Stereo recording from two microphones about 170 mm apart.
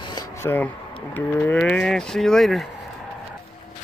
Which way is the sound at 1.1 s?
10° left (ahead or behind).